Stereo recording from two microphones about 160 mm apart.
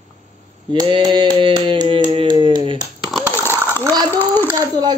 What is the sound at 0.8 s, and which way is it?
Speech, 30° right (ahead or behind).